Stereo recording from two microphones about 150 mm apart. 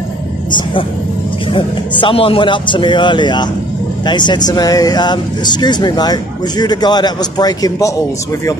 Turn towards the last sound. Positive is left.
turn(degrees=25)  # may be behind; listen again after turning